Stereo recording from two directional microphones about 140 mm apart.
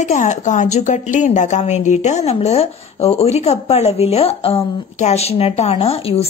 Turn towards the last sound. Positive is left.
turn(degrees=45)  # may be behind; listen again after turning